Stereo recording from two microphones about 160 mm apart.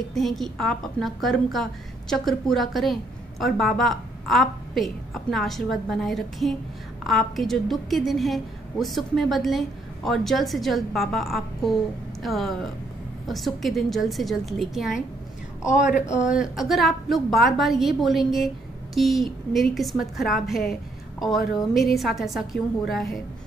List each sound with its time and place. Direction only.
0.1 s a woman's voice: centre (ahead or behind)
15.7 s speech: 50° left (ahead or behind)
16.3 s a woman's voice: 5° right (ahead or behind)